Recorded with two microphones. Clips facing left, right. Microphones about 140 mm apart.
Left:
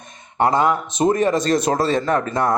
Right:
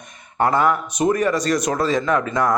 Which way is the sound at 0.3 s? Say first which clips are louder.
Left 1 dB; 20° left (ahead or behind).